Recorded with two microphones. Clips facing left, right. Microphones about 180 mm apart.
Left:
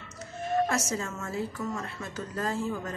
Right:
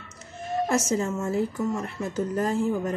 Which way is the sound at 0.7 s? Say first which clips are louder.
Right 6 dB; 25° right (ahead or behind).